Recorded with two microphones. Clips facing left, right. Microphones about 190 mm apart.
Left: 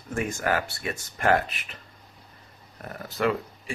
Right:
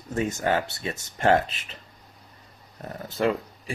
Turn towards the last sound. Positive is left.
turn(degrees=-25)  # may be behind; listen again after turning